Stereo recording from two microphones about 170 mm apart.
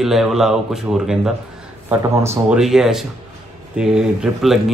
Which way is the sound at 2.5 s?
Centre (ahead or behind).